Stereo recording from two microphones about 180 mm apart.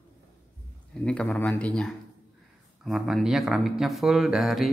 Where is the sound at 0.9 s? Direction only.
5° left (ahead or behind).